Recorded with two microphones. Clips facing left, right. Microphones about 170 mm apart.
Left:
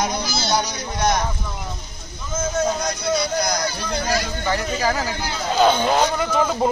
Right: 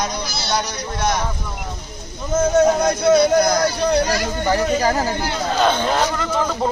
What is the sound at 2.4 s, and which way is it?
Speech, 70° right (ahead or behind).